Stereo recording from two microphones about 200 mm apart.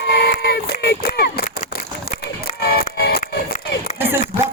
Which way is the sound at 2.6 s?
50° left (ahead or behind).